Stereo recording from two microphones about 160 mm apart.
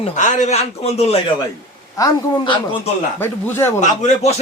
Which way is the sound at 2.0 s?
25° left (ahead or behind).